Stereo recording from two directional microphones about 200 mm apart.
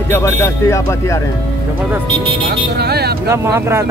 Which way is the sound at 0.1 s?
10° left (ahead or behind).